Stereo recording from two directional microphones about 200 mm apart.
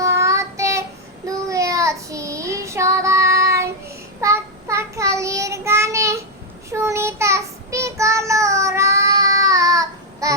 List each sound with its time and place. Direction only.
0.0 s child singing: 15° right (ahead or behind)